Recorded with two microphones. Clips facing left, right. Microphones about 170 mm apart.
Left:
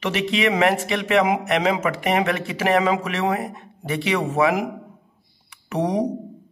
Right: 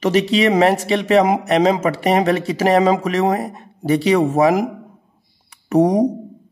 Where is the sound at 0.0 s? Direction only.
35° right (ahead or behind).